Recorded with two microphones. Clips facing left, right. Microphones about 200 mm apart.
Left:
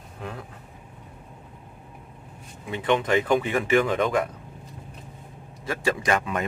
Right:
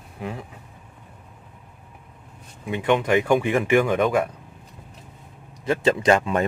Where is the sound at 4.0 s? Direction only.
10° right (ahead or behind).